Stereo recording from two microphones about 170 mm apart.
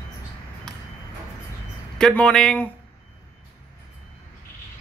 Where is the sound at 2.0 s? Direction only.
5° left (ahead or behind).